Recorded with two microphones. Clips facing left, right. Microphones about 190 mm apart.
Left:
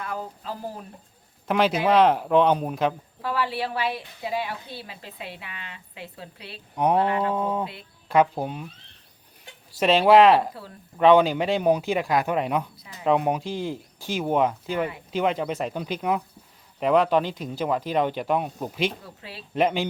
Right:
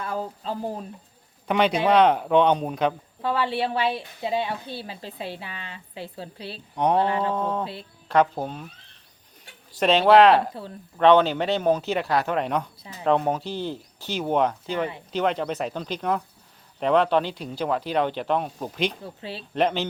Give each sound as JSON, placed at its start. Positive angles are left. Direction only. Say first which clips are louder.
{"t": 0.0, "sound": "a woman's voice", "louder": "right 3 dB", "side_deg": -30}
{"t": 1.5, "sound": "speech", "louder": "right 1 dB", "side_deg": 0}
{"t": 3.2, "sound": "a woman's voice", "louder": "right 3 dB", "side_deg": -25}
{"t": 6.7, "sound": "speech", "louder": "even", "side_deg": 5}
{"t": 7.0, "sound": "a woman's voice", "louder": "even", "side_deg": -30}
{"t": 7.3, "sound": "speech", "louder": "even", "side_deg": 10}
{"t": 7.6, "sound": "a woman's voice", "louder": "even", "side_deg": -30}
{"t": 8.0, "sound": "speech", "louder": "even", "side_deg": 10}
{"t": 9.8, "sound": "speech", "louder": "even", "side_deg": 5}
{"t": 19.0, "sound": "a woman's voice", "louder": "right 6 dB", "side_deg": -30}
{"t": 19.5, "sound": "speech", "louder": "left 1 dB", "side_deg": 10}